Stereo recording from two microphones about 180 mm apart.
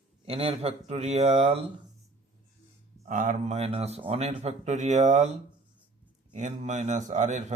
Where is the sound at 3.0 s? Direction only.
45° right (ahead or behind).